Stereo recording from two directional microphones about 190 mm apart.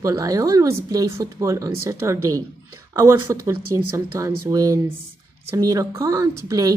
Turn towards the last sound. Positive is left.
turn(degrees=-20)  # may be behind; listen again after turning